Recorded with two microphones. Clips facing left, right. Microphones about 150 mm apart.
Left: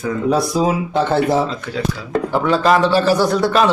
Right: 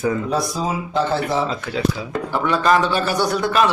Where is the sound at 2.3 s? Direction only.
30° left (ahead or behind).